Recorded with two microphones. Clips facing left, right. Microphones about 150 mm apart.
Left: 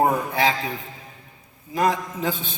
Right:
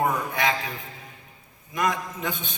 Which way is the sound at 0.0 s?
30° left (ahead or behind).